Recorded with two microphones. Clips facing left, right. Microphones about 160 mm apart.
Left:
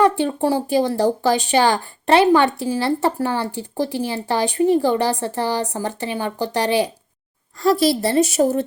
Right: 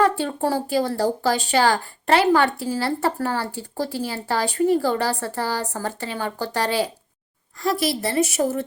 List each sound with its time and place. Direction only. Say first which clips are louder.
0.0 s speech: left 3 dB; 20° left (ahead or behind)
7.6 s speech: left 6 dB; 30° left (ahead or behind)